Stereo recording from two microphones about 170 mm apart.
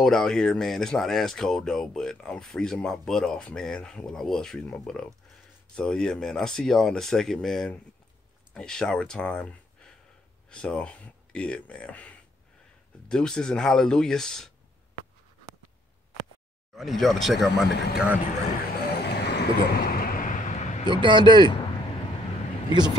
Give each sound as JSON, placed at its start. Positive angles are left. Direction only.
{"t": 0.0, "sound": "speech", "side_deg": 5}
{"t": 16.7, "sound": "speech", "side_deg": 0}
{"t": 19.0, "sound": "vehicle", "side_deg": 80}
{"t": 20.9, "sound": "speech", "side_deg": -30}